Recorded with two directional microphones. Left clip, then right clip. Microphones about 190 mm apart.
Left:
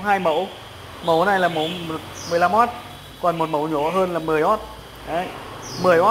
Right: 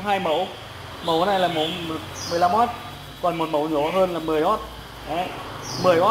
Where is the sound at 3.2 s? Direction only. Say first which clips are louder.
Left 2 dB; 30° left (ahead or behind).